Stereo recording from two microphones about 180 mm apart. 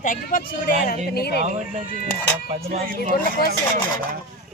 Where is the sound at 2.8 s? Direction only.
50° right (ahead or behind).